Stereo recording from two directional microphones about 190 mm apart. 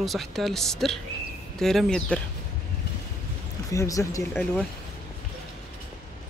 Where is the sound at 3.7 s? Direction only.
15° left (ahead or behind).